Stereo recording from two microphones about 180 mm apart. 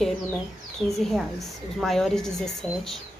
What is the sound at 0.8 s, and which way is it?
Speech, centre (ahead or behind).